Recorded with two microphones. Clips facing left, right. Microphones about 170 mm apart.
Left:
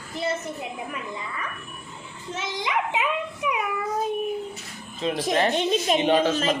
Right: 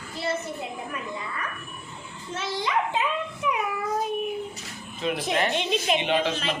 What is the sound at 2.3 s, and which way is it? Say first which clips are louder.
Speech: right 1 dB; 15° left (ahead or behind).